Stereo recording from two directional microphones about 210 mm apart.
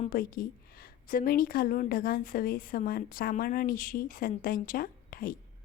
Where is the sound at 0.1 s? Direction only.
45° left (ahead or behind).